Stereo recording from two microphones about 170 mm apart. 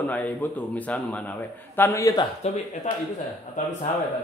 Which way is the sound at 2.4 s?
45° left (ahead or behind).